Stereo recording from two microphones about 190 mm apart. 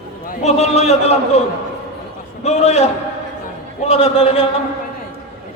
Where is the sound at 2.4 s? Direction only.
35° left (ahead or behind).